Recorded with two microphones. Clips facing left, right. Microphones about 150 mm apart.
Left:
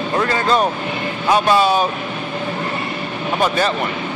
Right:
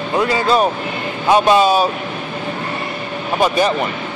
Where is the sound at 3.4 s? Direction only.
15° right (ahead or behind).